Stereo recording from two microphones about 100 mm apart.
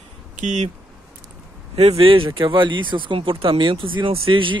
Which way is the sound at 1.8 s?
80° right.